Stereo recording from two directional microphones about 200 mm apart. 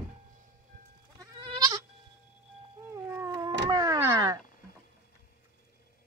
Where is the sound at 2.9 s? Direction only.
15° right (ahead or behind).